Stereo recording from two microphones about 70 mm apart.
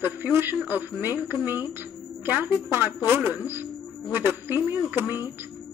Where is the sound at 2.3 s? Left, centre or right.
Right.